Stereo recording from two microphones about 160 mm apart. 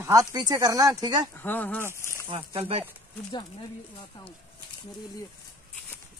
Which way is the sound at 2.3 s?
35° right (ahead or behind).